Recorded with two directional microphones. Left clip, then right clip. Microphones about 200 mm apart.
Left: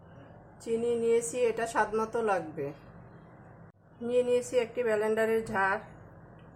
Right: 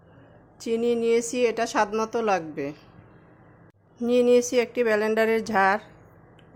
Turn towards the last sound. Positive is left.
turn(degrees=-55)  # may be behind; listen again after turning